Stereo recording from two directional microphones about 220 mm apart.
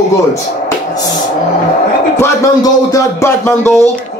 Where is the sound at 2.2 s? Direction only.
15° left (ahead or behind).